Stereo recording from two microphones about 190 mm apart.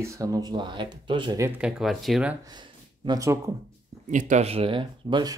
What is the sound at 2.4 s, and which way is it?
Speech, 20° right (ahead or behind).